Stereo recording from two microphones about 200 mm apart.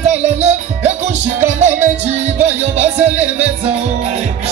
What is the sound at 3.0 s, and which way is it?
Music, 10° right (ahead or behind).